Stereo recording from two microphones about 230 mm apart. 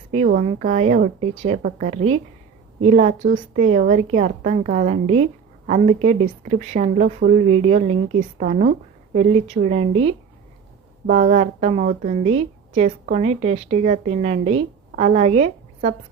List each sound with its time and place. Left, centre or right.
0.1 s a woman's voice: right